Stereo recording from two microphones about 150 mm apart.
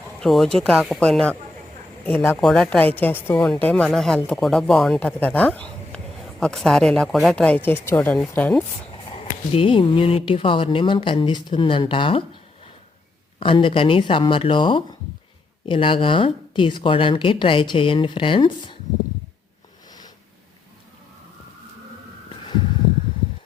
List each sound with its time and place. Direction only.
0.2 s a woman's voice: centre (ahead or behind)
8.9 s speech: 40° left (ahead or behind)
13.4 s speech: 35° left (ahead or behind)